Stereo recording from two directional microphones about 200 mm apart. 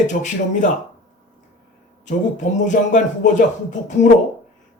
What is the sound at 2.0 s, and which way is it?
A man's voice, 40° left (ahead or behind).